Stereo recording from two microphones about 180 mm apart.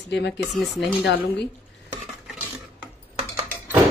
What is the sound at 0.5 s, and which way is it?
Speech, centre (ahead or behind).